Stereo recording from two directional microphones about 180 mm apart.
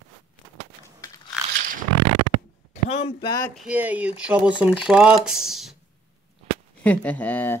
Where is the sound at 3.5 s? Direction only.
5° right (ahead or behind).